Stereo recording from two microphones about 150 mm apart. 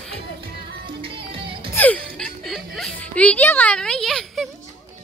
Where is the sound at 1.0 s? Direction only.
35° right (ahead or behind).